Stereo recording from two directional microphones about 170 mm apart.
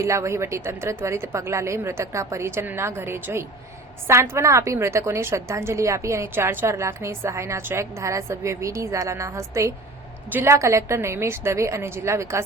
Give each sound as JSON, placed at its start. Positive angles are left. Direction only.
{"t": 0.0, "sound": "a woman's voice", "side_deg": -15}